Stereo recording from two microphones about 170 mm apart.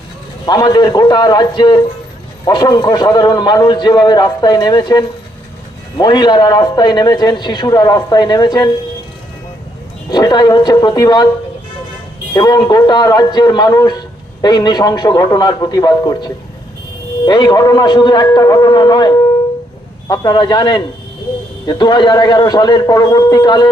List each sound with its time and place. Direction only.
0.4 s a man's voice: 20° left (ahead or behind)
10.1 s a man's voice: 25° left (ahead or behind)
12.3 s a man's voice: 20° left (ahead or behind)